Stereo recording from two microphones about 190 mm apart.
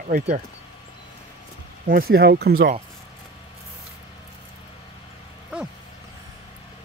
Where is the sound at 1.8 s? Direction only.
50° right (ahead or behind).